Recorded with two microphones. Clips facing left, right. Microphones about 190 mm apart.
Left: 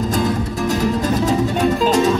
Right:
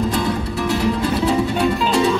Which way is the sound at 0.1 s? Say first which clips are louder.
Left 2 dB; 40° left (ahead or behind).